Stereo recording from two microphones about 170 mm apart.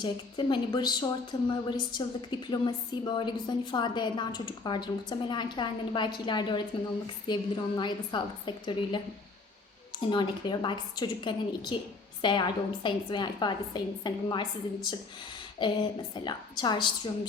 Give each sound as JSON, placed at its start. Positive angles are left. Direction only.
{"t": 0.0, "sound": "a woman's voice", "side_deg": 30}
{"t": 10.0, "sound": "a woman's voice", "side_deg": 25}